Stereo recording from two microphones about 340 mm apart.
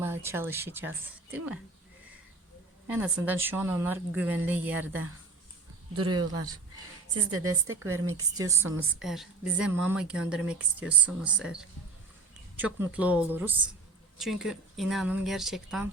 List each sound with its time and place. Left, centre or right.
0.0 s speech: centre
2.8 s a woman's voice: centre
6.0 s a woman's voice: right
8.1 s a woman's voice: centre